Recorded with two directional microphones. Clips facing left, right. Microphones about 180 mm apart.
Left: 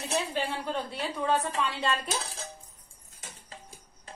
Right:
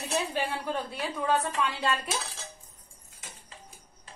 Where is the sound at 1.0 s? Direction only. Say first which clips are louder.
Even; 5° right (ahead or behind).